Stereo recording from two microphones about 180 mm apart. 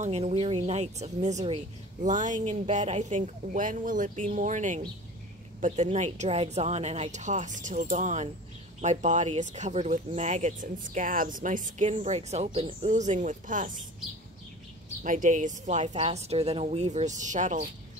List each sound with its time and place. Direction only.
0.0 s a woman's voice: 35° right (ahead or behind)
15.0 s a woman's voice: 45° right (ahead or behind)